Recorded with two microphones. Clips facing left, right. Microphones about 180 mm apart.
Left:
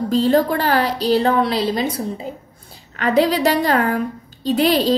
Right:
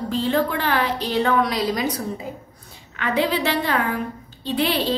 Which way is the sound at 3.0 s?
40° left (ahead or behind).